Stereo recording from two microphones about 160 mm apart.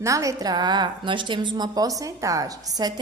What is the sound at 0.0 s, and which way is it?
A woman's voice, 20° right (ahead or behind).